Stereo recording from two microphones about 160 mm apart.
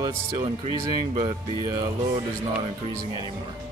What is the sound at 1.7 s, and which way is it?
Speech, 30° right (ahead or behind).